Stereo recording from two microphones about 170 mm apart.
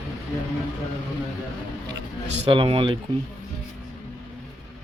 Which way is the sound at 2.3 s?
35° right (ahead or behind).